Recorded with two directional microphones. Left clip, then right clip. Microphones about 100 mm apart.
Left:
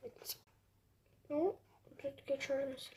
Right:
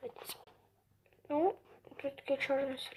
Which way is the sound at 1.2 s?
25° left (ahead or behind).